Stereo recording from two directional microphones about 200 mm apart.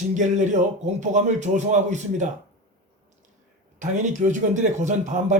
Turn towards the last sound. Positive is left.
turn(degrees=-40)  # may be behind; listen again after turning